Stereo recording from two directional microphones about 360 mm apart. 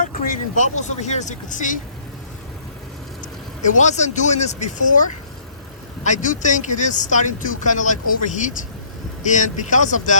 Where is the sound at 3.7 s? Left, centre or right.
Centre.